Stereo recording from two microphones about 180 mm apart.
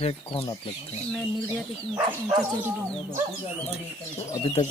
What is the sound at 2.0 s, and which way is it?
Speech, 20° right (ahead or behind).